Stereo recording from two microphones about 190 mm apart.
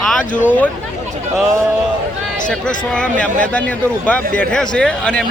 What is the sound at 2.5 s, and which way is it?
Speech, 5° left (ahead or behind).